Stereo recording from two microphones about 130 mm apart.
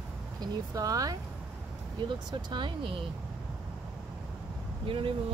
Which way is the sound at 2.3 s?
35° right (ahead or behind).